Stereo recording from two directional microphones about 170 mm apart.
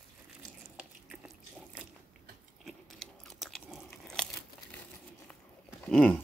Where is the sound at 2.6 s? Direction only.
Centre (ahead or behind).